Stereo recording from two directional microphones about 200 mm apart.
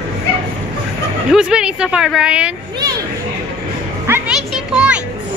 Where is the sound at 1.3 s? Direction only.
5° right (ahead or behind).